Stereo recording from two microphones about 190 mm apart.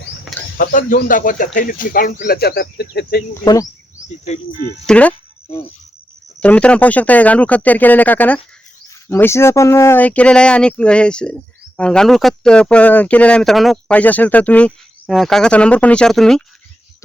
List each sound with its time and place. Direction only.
0.5 s speech: 45° left (ahead or behind)
3.4 s speech: 20° left (ahead or behind)
4.9 s speech: 5° left (ahead or behind)
6.4 s speech: 5° left (ahead or behind)